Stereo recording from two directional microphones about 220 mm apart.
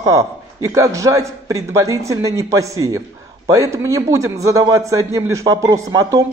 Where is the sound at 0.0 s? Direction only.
15° right (ahead or behind).